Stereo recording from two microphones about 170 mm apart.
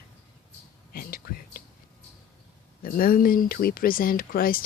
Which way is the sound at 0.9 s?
60° left (ahead or behind).